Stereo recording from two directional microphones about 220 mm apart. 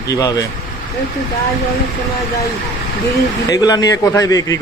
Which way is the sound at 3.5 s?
15° left (ahead or behind).